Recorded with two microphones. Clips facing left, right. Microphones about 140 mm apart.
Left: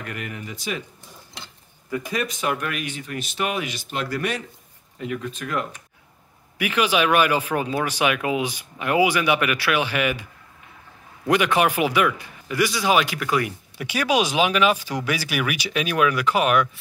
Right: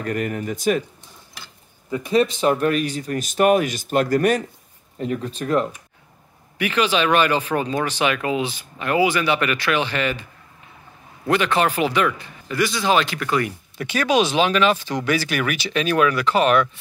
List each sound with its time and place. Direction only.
0.0 s speech: 40° right (ahead or behind)
1.4 s a sound: 25° left (ahead or behind)
1.9 s speech: 25° right (ahead or behind)
6.6 s a man's voice: 10° left (ahead or behind)
11.2 s a man's voice: 15° left (ahead or behind)